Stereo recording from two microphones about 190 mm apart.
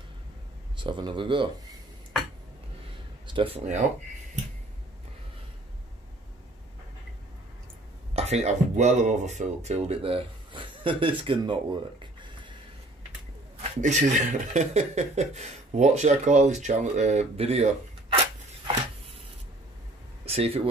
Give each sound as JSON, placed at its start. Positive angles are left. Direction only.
{"t": 0.7, "sound": "speech", "side_deg": -25}
{"t": 3.3, "sound": "speech", "side_deg": -25}
{"t": 8.1, "sound": "speech", "side_deg": -35}
{"t": 13.6, "sound": "speech", "side_deg": -40}
{"t": 20.2, "sound": "speech", "side_deg": -30}